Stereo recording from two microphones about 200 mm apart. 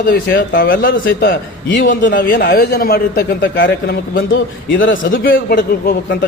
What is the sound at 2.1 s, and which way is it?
A man's voice, 45° left (ahead or behind).